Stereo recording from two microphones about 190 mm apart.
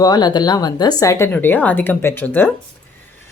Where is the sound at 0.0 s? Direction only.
20° left (ahead or behind).